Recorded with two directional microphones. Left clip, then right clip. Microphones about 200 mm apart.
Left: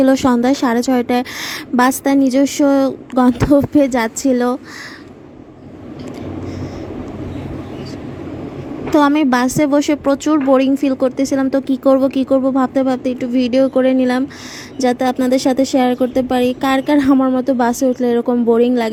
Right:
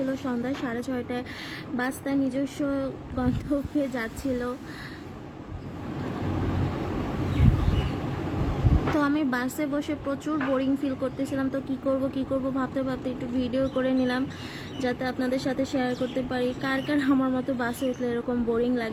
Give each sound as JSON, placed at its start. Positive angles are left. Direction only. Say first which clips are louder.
{"t": 0.1, "sound": "a woman's voice", "louder": "left 17 dB", "side_deg": 50}
{"t": 9.0, "sound": "a woman's voice", "louder": "left 15 dB", "side_deg": 40}